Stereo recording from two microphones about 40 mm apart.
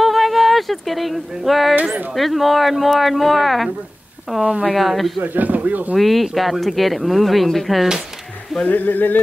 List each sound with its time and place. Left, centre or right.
0.0 s a sound: centre
2.1 s speech: centre
4.4 s speech: right
4.6 s speech: centre
5.2 s speech: right
5.9 s speech: centre
8.6 s a sound: left